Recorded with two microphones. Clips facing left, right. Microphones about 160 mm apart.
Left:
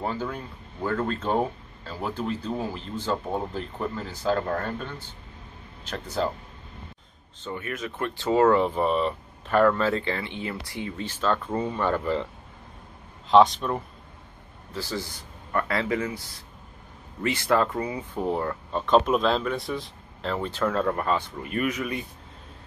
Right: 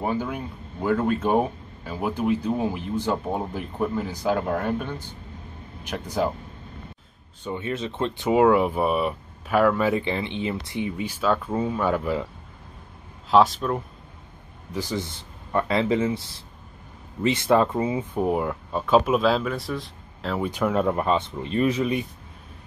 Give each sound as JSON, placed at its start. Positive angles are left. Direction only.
{"t": 0.0, "sound": "speech", "side_deg": -15}
{"t": 7.4, "sound": "a man's voice", "side_deg": -25}
{"t": 8.3, "sound": "speech", "side_deg": -10}
{"t": 13.3, "sound": "speech", "side_deg": 0}
{"t": 14.7, "sound": "a man's voice", "side_deg": -15}